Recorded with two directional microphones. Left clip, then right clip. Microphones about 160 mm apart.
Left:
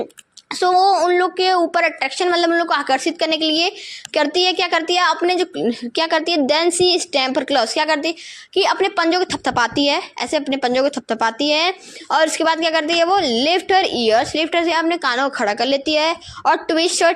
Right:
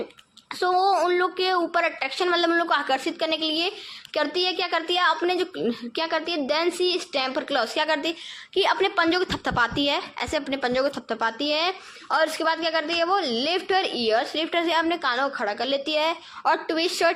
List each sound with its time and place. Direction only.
0.5 s a woman's voice: 40° left (ahead or behind)